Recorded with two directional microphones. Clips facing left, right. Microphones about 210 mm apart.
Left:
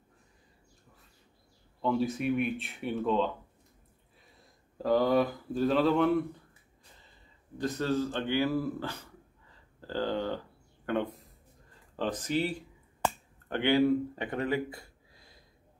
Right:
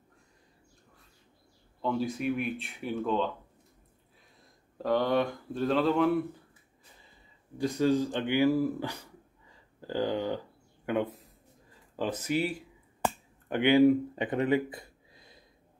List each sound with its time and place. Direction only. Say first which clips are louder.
1.8 s speech: left 1 dB; centre (ahead or behind)
4.4 s speech: even; centre (ahead or behind)
7.5 s speech: right 4 dB; 10° right (ahead or behind)
13.0 s finger snapping: right 1 dB; 15° right (ahead or behind)